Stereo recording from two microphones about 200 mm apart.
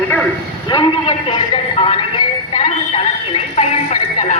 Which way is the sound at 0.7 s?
25° left (ahead or behind).